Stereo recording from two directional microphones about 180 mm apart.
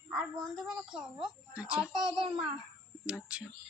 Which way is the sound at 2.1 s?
25° right (ahead or behind).